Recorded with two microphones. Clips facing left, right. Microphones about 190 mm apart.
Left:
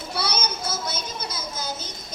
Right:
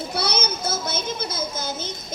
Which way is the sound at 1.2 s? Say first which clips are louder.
Right 4 dB; 50° right (ahead or behind).